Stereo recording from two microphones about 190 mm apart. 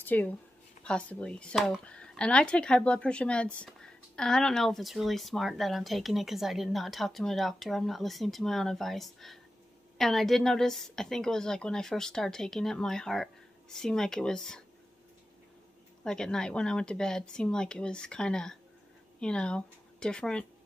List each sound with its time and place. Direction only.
0.0 s speech: 10° left (ahead or behind)
16.0 s speech: 5° left (ahead or behind)